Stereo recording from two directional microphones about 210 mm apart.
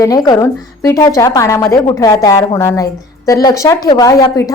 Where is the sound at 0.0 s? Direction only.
15° left (ahead or behind).